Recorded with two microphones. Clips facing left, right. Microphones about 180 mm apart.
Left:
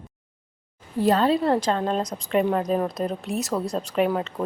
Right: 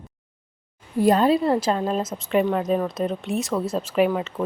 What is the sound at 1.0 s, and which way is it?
A woman's voice, 15° right (ahead or behind).